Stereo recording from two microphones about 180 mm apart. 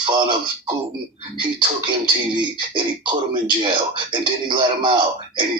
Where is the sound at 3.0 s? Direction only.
25° right (ahead or behind).